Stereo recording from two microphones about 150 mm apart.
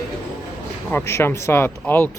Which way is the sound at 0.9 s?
15° left (ahead or behind).